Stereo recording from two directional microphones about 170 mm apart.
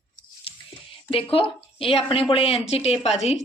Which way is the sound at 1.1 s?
35° left (ahead or behind).